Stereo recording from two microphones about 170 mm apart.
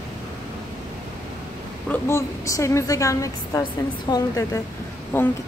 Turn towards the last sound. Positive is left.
turn(degrees=10)  # may be behind; listen again after turning